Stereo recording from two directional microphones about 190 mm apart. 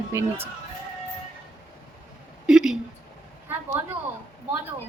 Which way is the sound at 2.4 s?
5° right (ahead or behind).